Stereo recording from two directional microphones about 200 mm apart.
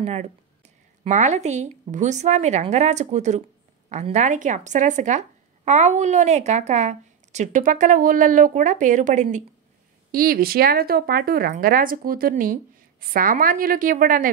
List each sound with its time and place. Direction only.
0.0 s speech: 30° right (ahead or behind)